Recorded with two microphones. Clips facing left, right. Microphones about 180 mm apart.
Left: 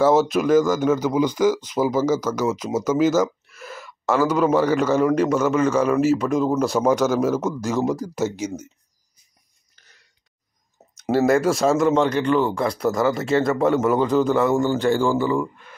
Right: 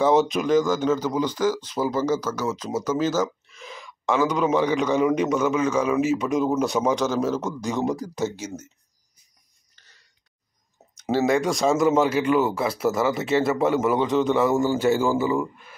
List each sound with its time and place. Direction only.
0.0 s speech: 5° left (ahead or behind)
11.1 s speech: 5° left (ahead or behind)